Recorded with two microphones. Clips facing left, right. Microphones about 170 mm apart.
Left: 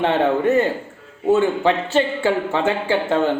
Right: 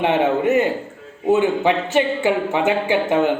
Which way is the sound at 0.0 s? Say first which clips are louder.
Even; 20° right (ahead or behind).